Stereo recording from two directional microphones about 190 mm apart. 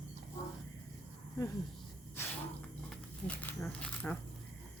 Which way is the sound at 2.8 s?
5° left (ahead or behind).